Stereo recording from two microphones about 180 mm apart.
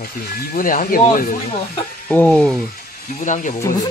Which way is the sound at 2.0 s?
5° left (ahead or behind).